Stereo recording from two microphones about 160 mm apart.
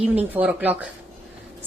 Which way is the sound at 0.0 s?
10° right (ahead or behind).